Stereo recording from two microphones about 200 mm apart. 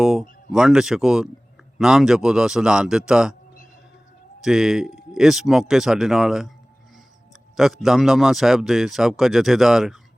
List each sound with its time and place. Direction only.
0.0 s speech: centre (ahead or behind)
4.4 s speech: centre (ahead or behind)
7.5 s speech: centre (ahead or behind)